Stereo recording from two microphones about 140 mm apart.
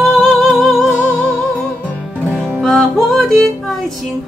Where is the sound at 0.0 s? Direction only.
Centre (ahead or behind).